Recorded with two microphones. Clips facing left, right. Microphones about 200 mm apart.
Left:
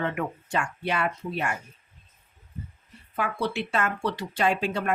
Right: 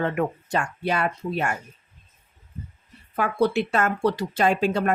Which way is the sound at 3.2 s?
45° right (ahead or behind).